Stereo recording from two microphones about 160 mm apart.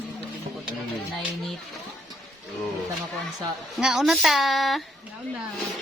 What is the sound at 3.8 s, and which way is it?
A woman's voice, 5° right (ahead or behind).